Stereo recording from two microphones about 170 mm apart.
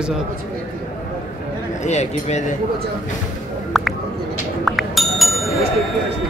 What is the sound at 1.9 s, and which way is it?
Speech, 40° left (ahead or behind).